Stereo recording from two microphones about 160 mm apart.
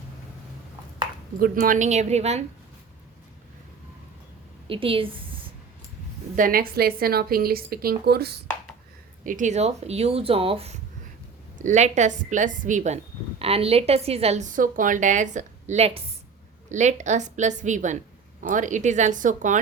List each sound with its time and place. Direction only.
1.4 s a woman's voice: 60° right (ahead or behind)
4.7 s speech: 35° right (ahead or behind)
6.3 s a woman's voice: 60° right (ahead or behind); by 8.4 s 85° right
9.2 s speech: 55° right (ahead or behind); by 10.8 s 35° right (ahead or behind)
11.5 s a woman's voice: 50° right (ahead or behind)
13.4 s a woman's voice: 40° right (ahead or behind)